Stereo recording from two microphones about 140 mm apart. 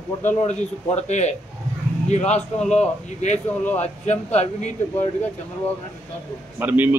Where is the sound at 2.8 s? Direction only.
55° left (ahead or behind).